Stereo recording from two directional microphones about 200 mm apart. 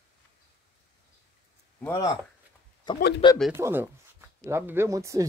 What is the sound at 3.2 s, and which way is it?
Speech, 25° left (ahead or behind).